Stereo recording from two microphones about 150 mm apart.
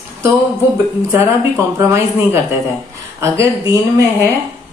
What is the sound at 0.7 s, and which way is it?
Speech, 15° right (ahead or behind).